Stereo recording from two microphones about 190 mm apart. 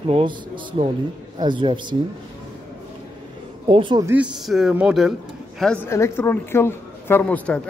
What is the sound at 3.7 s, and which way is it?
Speech, 25° right (ahead or behind).